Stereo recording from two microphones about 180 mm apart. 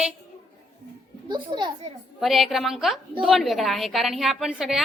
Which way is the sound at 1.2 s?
25° right (ahead or behind).